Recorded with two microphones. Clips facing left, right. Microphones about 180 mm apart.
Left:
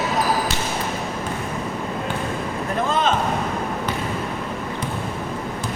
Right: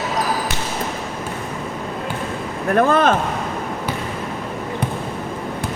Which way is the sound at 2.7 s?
65° right (ahead or behind).